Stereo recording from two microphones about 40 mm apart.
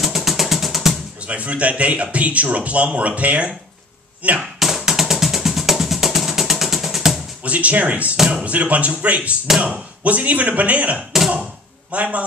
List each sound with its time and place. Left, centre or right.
0.0 s music: centre
1.2 s a man's voice: right
4.4 s music: centre
7.4 s a man's voice: right
11.0 s a sound: centre
11.9 s a man's voice: right